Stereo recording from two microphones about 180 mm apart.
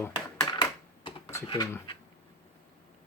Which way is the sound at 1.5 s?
20° left (ahead or behind).